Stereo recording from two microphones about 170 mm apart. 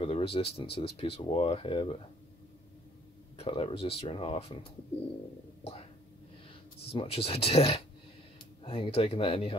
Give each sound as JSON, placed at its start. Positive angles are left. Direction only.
{"t": 0.0, "sound": "speech", "side_deg": 35}
{"t": 3.3, "sound": "speech", "side_deg": 35}
{"t": 6.9, "sound": "speech", "side_deg": 35}